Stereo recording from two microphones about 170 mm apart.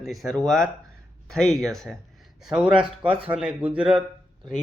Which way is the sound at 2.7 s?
30° right (ahead or behind).